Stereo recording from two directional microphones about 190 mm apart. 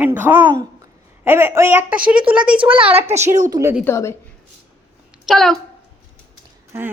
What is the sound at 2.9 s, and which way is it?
Speech, 35° right (ahead or behind).